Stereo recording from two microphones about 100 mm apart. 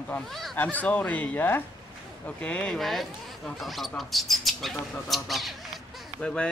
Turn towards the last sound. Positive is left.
turn(degrees=10)  # may be behind; listen again after turning